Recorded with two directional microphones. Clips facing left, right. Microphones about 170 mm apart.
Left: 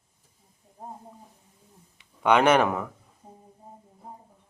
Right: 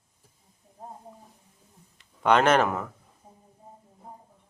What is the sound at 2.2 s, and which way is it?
Speech, 10° left (ahead or behind).